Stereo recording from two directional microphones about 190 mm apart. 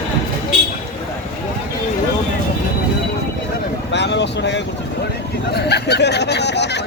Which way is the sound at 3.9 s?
65° left (ahead or behind).